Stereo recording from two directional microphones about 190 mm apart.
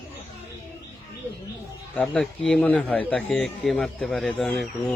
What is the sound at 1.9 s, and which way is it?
A man's voice, 5° left (ahead or behind).